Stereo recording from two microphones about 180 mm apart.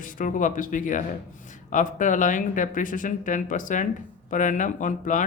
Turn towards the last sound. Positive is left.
turn(degrees=45)  # may be behind; listen again after turning